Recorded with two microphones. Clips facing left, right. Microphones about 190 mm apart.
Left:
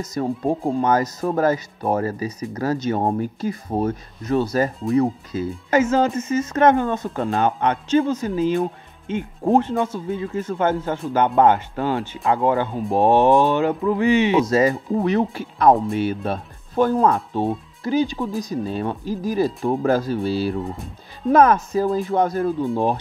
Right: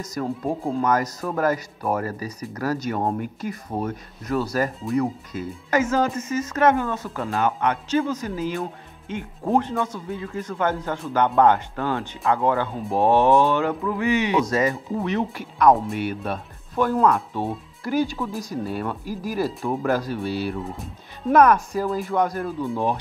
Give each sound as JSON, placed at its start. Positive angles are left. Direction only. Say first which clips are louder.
{"t": 0.1, "sound": "speech", "louder": "left 4 dB", "side_deg": 25}